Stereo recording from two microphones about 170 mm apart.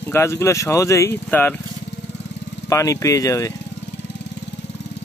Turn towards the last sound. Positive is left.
turn(degrees=20)  # may be behind; listen again after turning